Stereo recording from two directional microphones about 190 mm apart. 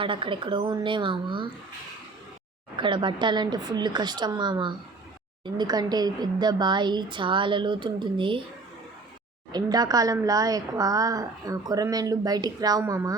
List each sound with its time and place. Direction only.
0.0 s speech: 25° right (ahead or behind)
2.7 s speech: 25° right (ahead or behind)
9.5 s speech: 20° right (ahead or behind)